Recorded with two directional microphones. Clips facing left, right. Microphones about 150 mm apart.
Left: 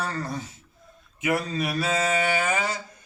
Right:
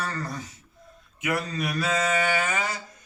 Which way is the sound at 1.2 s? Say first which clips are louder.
Left 2 dB; 30° left (ahead or behind).